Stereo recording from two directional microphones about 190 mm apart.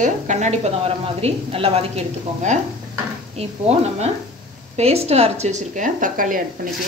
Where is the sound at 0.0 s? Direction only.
40° right (ahead or behind).